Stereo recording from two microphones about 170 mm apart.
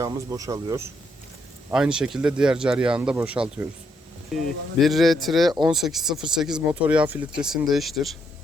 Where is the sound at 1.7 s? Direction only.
5° right (ahead or behind).